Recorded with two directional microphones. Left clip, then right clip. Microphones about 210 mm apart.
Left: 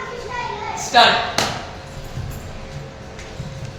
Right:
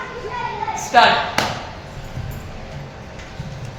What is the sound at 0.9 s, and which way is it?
Speech, 30° right (ahead or behind).